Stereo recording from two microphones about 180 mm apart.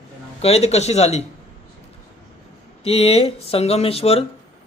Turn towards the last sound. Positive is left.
turn(degrees=35)  # may be behind; listen again after turning